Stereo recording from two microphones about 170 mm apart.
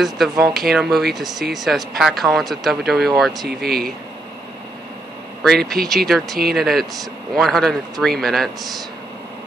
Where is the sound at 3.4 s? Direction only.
65° right (ahead or behind).